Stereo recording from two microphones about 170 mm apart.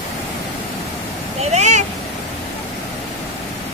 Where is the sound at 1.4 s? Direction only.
40° right (ahead or behind).